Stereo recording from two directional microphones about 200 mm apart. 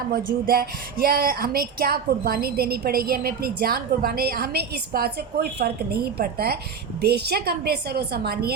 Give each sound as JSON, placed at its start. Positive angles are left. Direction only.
{"t": 0.1, "sound": "speech", "side_deg": -50}